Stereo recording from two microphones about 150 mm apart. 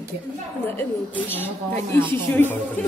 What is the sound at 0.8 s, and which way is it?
Speech, 10° left (ahead or behind).